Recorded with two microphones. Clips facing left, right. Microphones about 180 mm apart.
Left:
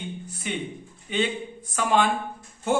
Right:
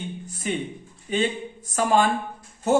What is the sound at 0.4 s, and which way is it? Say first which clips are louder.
Speech: right 3 dB; 40° right (ahead or behind).